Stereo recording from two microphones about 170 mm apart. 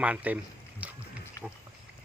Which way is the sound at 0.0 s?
10° right (ahead or behind).